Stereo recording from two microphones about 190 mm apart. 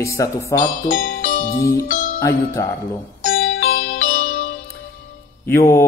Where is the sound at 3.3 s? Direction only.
85° left.